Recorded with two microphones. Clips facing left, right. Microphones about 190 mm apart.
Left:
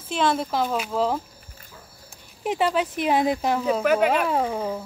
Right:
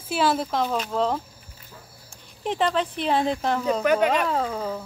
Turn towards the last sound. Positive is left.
turn(degrees=20)  # may be behind; listen again after turning